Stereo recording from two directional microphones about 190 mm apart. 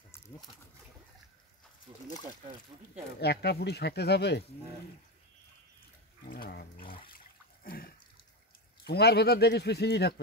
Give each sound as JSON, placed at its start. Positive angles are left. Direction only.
{"t": 3.2, "sound": "speech", "side_deg": 60}
{"t": 6.2, "sound": "dog", "side_deg": 50}
{"t": 7.6, "sound": "water", "side_deg": 50}
{"t": 8.8, "sound": "speech", "side_deg": 60}